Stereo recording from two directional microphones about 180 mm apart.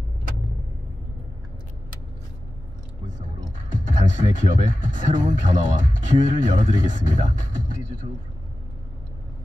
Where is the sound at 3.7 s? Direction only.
45° right (ahead or behind).